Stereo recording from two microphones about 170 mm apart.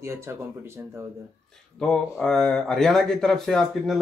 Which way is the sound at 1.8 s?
5° left (ahead or behind).